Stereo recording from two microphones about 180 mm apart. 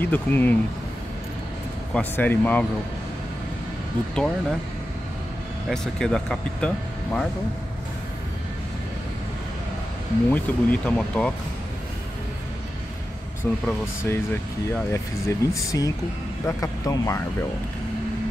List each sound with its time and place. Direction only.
0.0 s speech: 10° left (ahead or behind)
2.0 s speech: 10° left (ahead or behind)
4.1 s speech: 5° left (ahead or behind)
5.7 s speech: 5° left (ahead or behind)
10.3 s speech: 10° left (ahead or behind)
13.4 s speech: 10° left (ahead or behind)